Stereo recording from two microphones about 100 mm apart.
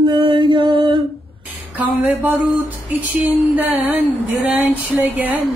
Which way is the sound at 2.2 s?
15° right (ahead or behind).